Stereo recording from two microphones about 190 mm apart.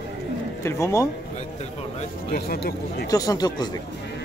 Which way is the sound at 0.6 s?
15° left (ahead or behind).